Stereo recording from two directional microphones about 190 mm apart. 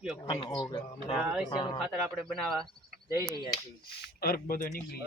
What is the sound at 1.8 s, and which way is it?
Speech, centre (ahead or behind).